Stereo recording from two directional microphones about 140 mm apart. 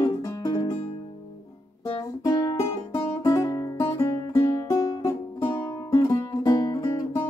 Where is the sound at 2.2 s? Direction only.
25° left (ahead or behind).